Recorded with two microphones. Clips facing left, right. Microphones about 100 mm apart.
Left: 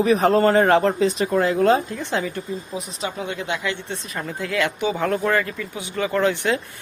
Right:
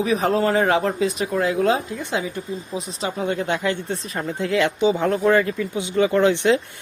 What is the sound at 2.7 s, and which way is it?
Speech, 35° right (ahead or behind).